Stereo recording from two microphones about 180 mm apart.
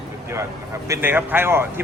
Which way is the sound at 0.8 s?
15° right (ahead or behind).